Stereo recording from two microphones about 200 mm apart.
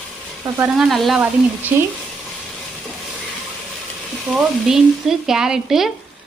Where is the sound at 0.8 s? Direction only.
Centre (ahead or behind).